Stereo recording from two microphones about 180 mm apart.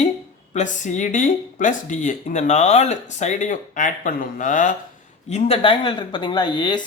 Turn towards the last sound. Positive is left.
turn(degrees=25)  # may be behind; listen again after turning